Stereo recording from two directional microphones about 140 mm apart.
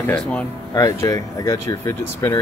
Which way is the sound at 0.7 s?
25° left (ahead or behind).